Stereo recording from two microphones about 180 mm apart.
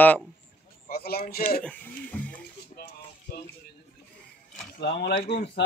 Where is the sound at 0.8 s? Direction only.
60° left (ahead or behind).